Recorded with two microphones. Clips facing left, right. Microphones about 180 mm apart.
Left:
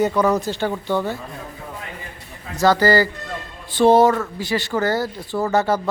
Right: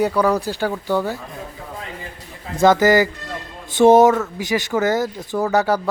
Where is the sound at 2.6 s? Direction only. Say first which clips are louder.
Right 2 dB; 20° right (ahead or behind).